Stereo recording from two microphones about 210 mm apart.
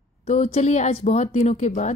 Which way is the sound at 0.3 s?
35° left (ahead or behind).